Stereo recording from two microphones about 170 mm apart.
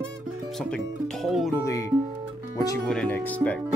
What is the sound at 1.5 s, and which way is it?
Speech, 20° left (ahead or behind).